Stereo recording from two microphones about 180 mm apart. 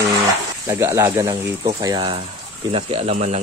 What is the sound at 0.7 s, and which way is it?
Speech, 15° right (ahead or behind).